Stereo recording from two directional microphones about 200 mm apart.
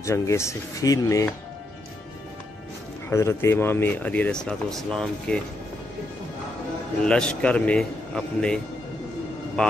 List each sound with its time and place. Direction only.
0.0 s speech: 15° left (ahead or behind)
3.1 s speech: 15° left (ahead or behind)
7.0 s a man's voice: 5° left (ahead or behind)
9.6 s speech: 5° left (ahead or behind)